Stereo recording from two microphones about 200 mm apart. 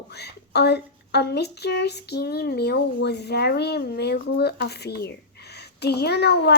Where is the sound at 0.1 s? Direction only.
55° left (ahead or behind).